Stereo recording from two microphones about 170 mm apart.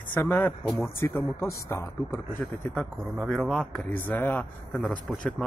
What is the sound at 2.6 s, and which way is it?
A man's voice, 5° left (ahead or behind).